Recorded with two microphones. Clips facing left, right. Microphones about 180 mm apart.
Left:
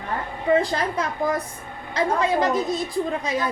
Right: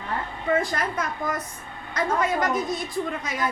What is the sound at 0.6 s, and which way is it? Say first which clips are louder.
A woman's voice: left 3 dB; 30° left (ahead or behind).